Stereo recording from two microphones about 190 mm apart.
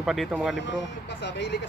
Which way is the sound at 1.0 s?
65° left (ahead or behind).